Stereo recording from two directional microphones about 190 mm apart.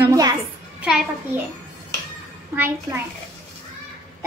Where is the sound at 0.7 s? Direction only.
5° right (ahead or behind).